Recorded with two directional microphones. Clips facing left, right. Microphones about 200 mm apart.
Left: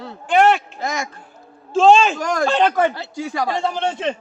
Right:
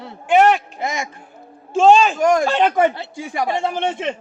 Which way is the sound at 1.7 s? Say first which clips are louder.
Even; 10° right (ahead or behind).